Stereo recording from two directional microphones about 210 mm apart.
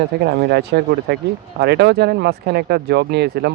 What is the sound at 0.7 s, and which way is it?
Speech, 50° right (ahead or behind).